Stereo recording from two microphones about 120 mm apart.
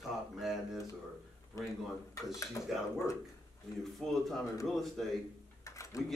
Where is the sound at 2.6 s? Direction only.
25° left (ahead or behind).